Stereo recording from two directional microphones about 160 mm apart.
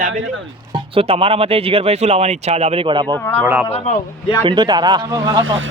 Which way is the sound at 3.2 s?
10° left (ahead or behind).